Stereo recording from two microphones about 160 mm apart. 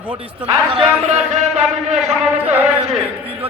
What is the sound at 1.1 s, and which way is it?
Music, 45° right (ahead or behind).